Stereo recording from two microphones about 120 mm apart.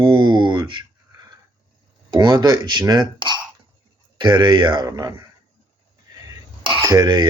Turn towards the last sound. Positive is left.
turn(degrees=-35)  # may be behind; listen again after turning